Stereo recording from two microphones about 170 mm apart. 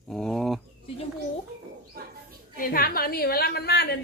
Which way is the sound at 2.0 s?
65° right (ahead or behind).